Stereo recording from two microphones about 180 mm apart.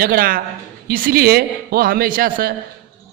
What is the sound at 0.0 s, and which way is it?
Speech, 55° right (ahead or behind).